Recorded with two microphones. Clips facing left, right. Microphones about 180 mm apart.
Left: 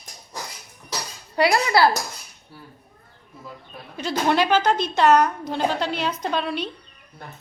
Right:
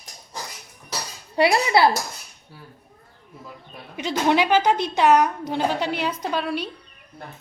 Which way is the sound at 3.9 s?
15° right (ahead or behind).